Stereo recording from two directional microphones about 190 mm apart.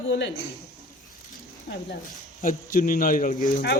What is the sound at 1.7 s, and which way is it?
A man's voice, 55° left (ahead or behind).